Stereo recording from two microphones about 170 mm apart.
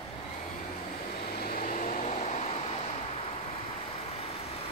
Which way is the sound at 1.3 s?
60° left (ahead or behind).